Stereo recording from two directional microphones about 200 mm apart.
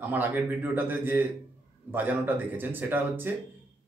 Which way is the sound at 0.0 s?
10° right (ahead or behind).